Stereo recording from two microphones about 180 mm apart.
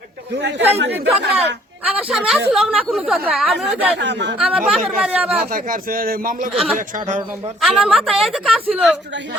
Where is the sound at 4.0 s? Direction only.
75° right (ahead or behind).